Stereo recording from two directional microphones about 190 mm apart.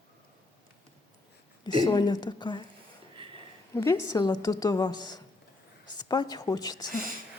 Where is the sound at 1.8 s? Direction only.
20° left (ahead or behind).